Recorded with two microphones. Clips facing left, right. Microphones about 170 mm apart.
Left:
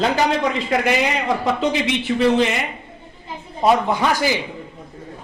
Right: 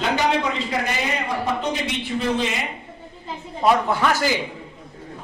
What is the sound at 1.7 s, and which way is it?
Speech, 70° left (ahead or behind).